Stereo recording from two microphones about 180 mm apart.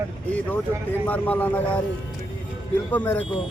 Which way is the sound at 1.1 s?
10° left (ahead or behind).